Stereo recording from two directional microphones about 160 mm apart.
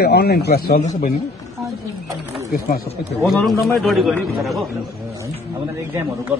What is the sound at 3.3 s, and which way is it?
A man's voice, centre (ahead or behind).